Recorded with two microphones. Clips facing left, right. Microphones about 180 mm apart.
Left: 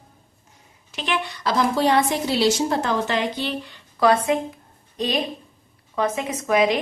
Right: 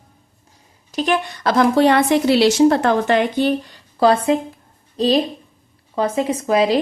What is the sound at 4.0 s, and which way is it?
Speech, 30° right (ahead or behind).